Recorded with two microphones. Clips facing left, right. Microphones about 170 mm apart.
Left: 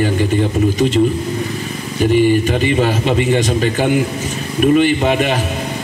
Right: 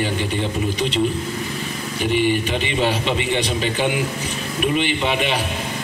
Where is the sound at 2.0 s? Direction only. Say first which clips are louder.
Left 7 dB; 40° left (ahead or behind).